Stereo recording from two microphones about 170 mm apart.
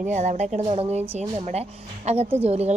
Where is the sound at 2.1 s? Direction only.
40° right (ahead or behind).